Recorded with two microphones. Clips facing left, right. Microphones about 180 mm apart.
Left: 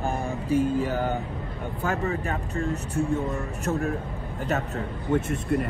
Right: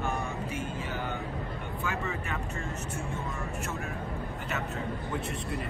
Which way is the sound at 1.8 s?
40° left (ahead or behind).